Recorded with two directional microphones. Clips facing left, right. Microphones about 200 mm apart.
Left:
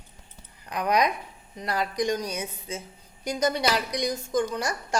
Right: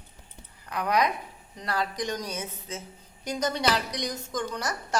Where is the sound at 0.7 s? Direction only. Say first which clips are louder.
Left 2 dB; 15° left (ahead or behind).